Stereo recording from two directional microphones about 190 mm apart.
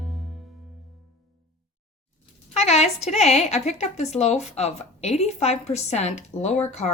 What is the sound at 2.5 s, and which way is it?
A woman's voice, 35° left (ahead or behind).